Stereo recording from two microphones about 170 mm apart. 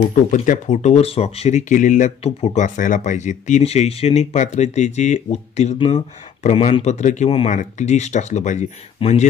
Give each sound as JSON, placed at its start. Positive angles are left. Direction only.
{"t": 0.3, "sound": "speech", "side_deg": 45}